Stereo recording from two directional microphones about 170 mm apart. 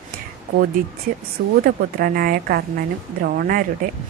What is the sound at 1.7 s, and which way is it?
A woman's voice, 60° right (ahead or behind).